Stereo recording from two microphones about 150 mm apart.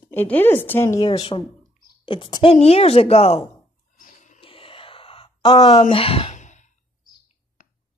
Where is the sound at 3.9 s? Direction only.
55° left (ahead or behind).